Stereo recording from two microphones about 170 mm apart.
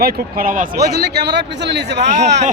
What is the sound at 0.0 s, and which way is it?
Speech, 55° right (ahead or behind).